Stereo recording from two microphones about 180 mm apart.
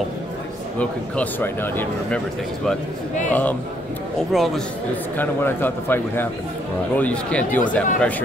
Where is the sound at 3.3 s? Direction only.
10° left (ahead or behind).